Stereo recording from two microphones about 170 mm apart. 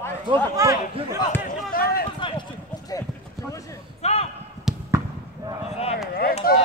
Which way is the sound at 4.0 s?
40° left (ahead or behind).